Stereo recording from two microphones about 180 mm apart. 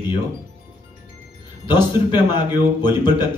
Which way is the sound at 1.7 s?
25° left (ahead or behind).